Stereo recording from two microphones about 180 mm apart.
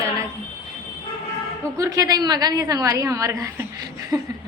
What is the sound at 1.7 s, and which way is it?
A woman's voice, 20° right (ahead or behind).